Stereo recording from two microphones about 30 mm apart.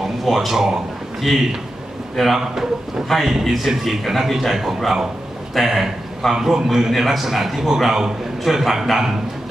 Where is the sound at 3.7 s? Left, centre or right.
Centre.